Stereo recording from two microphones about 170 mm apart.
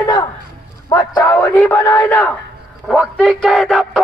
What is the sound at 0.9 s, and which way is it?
A man's voice, 20° left (ahead or behind).